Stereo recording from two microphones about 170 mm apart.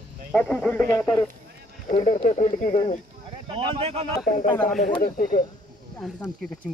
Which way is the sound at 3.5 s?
35° right (ahead or behind).